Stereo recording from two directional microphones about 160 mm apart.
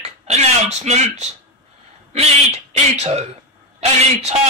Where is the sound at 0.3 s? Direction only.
45° right (ahead or behind).